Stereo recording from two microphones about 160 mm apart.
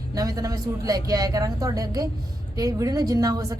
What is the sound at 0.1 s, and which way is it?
A woman's voice, 20° right (ahead or behind).